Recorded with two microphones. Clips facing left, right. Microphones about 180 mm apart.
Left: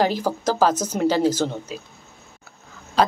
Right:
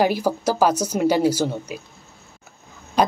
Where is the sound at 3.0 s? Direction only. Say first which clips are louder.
Even; 15° right (ahead or behind).